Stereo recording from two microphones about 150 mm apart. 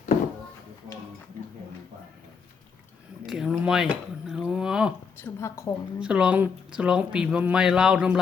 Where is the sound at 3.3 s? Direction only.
5° right (ahead or behind).